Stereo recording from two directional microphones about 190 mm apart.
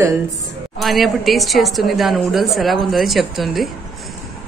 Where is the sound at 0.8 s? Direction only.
Centre (ahead or behind).